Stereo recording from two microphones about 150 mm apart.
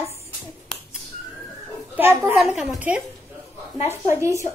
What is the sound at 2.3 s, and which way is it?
Speech, centre (ahead or behind).